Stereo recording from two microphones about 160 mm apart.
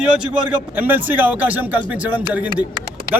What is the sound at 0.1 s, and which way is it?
A man's voice, 10° right (ahead or behind).